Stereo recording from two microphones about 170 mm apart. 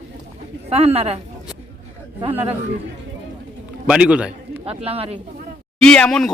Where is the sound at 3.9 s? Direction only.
5° right (ahead or behind).